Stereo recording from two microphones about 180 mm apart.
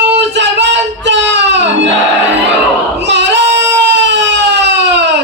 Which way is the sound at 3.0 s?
75° right (ahead or behind).